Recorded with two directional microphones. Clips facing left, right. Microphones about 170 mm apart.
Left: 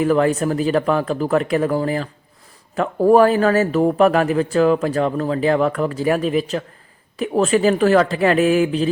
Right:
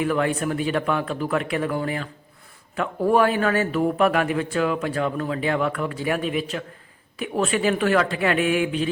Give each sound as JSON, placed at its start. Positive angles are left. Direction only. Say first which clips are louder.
{"t": 0.0, "sound": "speech", "louder": "left 6 dB", "side_deg": 40}